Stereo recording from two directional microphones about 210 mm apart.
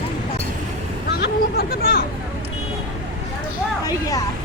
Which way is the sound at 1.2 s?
45° left (ahead or behind).